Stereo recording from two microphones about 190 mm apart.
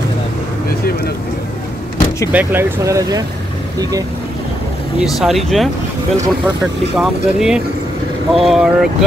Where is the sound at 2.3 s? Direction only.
10° right (ahead or behind).